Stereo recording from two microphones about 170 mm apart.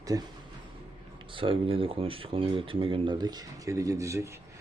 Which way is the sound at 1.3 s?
30° right (ahead or behind).